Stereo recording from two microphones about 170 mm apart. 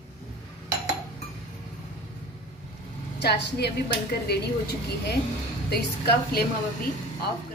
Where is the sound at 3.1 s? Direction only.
80° left.